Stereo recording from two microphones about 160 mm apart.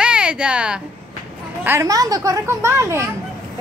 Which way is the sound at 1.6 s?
15° right (ahead or behind).